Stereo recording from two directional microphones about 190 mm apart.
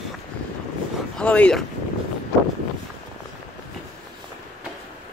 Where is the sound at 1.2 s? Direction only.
5° left (ahead or behind).